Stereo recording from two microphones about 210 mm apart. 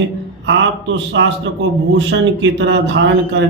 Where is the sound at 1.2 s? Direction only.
65° right (ahead or behind).